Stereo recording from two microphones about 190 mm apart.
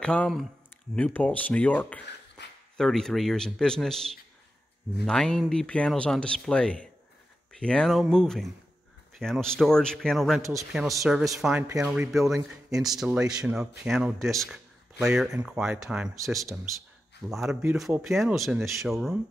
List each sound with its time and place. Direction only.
0.0 s speech: 5° left (ahead or behind)
10.4 s speech: 15° right (ahead or behind)
11.1 s speech: 5° right (ahead or behind)
15.0 s speech: 10° right (ahead or behind)